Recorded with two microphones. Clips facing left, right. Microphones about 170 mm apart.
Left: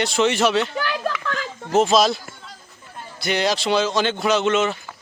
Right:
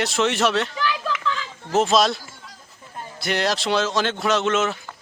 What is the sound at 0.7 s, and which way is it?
Children playing, 55° left (ahead or behind).